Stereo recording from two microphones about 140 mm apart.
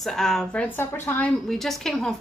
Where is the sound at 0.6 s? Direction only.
15° left (ahead or behind).